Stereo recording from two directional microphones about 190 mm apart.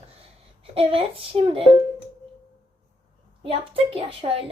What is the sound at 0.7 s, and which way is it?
Speech, 30° right (ahead or behind).